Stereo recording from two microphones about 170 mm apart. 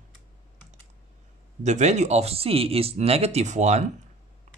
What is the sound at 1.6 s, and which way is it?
Speech, 45° right (ahead or behind).